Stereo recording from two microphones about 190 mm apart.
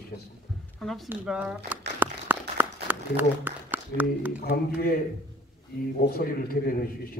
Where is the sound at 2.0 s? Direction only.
10° right (ahead or behind).